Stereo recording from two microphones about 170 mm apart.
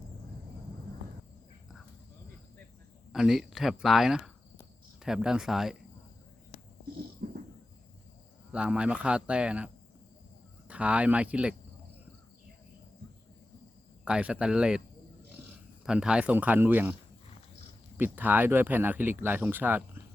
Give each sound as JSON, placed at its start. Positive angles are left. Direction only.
{"t": 3.1, "sound": "speech", "side_deg": 0}
{"t": 7.2, "sound": "a sound", "side_deg": -55}
{"t": 8.5, "sound": "speech", "side_deg": -5}
{"t": 10.7, "sound": "speech", "side_deg": -10}
{"t": 14.0, "sound": "speech", "side_deg": -5}
{"t": 17.9, "sound": "speech", "side_deg": -10}